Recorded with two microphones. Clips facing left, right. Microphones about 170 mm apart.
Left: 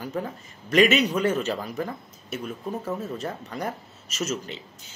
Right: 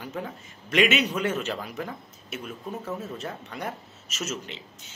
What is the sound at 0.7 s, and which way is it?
Speech, 35° left (ahead or behind).